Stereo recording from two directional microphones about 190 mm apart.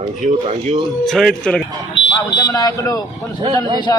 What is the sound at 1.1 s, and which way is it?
Speech, centre (ahead or behind).